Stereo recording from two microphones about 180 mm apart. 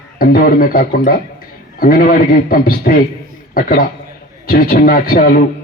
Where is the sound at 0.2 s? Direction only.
50° left (ahead or behind).